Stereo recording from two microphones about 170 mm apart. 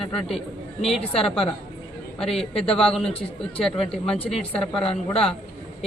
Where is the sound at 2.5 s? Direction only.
35° left (ahead or behind).